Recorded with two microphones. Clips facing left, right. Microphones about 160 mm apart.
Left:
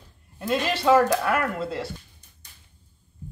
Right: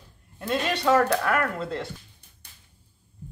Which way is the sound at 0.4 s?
5° left (ahead or behind).